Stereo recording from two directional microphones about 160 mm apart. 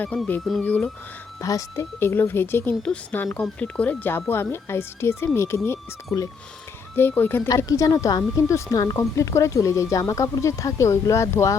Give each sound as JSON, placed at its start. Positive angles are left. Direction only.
{"t": 0.0, "sound": "speech", "side_deg": 10}
{"t": 1.4, "sound": "speech", "side_deg": 20}